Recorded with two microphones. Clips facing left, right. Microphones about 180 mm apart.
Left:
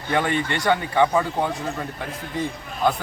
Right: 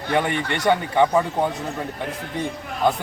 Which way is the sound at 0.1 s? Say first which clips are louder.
Even; 15° right (ahead or behind).